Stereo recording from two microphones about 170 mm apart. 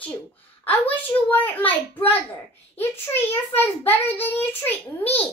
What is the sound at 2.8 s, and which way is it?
A child's voice, 15° left (ahead or behind).